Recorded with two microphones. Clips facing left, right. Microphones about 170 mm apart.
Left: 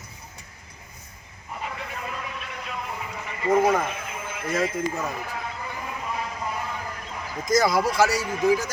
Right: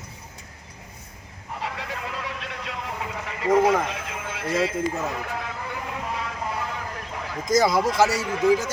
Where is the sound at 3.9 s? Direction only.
90° right.